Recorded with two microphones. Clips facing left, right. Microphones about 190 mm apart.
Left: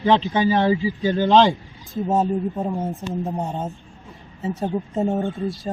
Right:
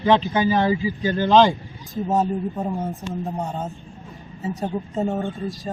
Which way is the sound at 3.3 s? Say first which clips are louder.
Left 1 dB; 20° left (ahead or behind).